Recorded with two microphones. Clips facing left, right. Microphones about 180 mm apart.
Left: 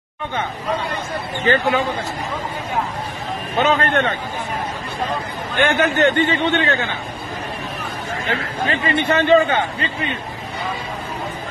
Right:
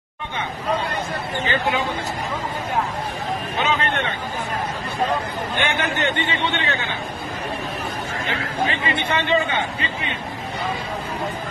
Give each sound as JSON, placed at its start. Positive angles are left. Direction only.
{"t": 1.5, "sound": "a man's voice", "side_deg": 45}
{"t": 3.5, "sound": "a man's voice", "side_deg": 45}
{"t": 5.6, "sound": "a man's voice", "side_deg": 45}
{"t": 8.3, "sound": "a man's voice", "side_deg": 45}